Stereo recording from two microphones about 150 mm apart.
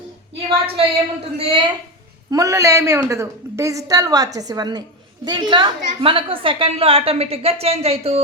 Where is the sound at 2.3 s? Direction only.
20° right (ahead or behind).